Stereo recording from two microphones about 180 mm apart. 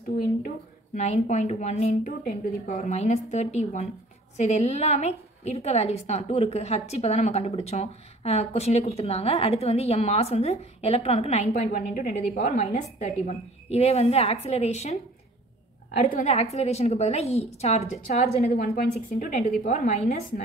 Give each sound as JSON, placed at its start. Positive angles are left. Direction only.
{"t": 0.9, "sound": "a woman's voice", "side_deg": 40}
{"t": 2.8, "sound": "a woman's voice", "side_deg": 35}
{"t": 16.3, "sound": "a woman's voice", "side_deg": 35}
{"t": 18.4, "sound": "a woman's voice", "side_deg": 60}